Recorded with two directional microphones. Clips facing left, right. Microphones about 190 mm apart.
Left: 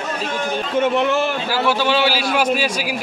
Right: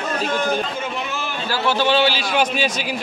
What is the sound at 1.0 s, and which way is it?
Speech, 70° left (ahead or behind).